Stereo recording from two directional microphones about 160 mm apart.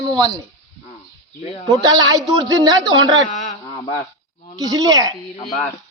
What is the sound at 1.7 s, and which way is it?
Speech, 25° right (ahead or behind).